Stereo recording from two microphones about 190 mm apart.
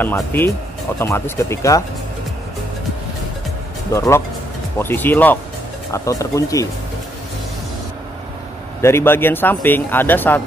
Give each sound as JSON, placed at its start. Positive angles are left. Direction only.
{"t": 0.0, "sound": "speech", "side_deg": 10}
{"t": 3.9, "sound": "speech", "side_deg": 15}
{"t": 8.8, "sound": "speech", "side_deg": 10}